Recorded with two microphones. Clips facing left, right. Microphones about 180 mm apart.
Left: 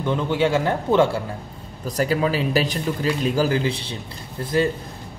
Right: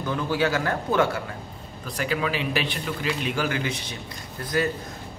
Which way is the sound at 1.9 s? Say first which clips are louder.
Left 6 dB; 40° left (ahead or behind).